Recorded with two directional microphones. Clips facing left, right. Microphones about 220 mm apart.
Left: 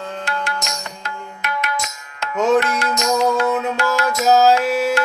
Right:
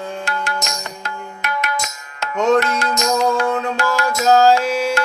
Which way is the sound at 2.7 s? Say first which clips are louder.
Right 1 dB; 40° right (ahead or behind).